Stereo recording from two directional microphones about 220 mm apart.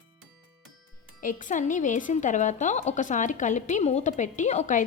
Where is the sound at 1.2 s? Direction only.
35° left (ahead or behind).